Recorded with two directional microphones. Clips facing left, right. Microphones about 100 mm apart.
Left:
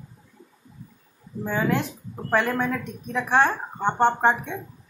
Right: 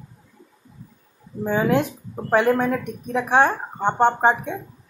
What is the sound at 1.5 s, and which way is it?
Speech, 15° right (ahead or behind).